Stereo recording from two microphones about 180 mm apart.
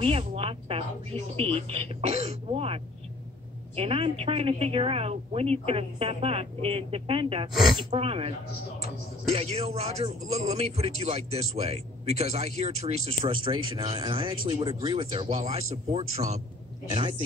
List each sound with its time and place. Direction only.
0.0 s a man's voice: 35° right (ahead or behind)
9.3 s a man's voice: 35° right (ahead or behind)